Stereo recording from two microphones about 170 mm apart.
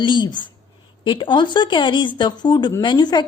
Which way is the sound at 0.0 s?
25° left (ahead or behind).